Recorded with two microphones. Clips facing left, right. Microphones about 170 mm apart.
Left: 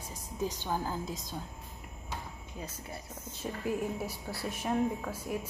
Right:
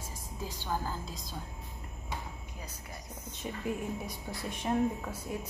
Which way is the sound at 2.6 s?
25° left (ahead or behind).